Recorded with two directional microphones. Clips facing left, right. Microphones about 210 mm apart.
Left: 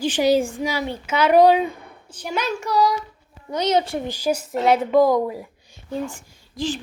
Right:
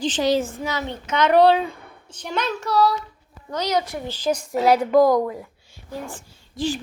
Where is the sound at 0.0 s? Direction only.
10° left (ahead or behind).